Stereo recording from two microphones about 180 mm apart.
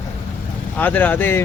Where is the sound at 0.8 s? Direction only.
10° left (ahead or behind).